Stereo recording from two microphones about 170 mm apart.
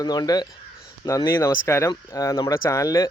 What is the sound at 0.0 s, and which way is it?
Speech, 25° left (ahead or behind).